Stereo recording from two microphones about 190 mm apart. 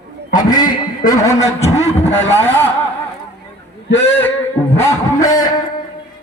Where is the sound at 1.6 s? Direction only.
35° left (ahead or behind).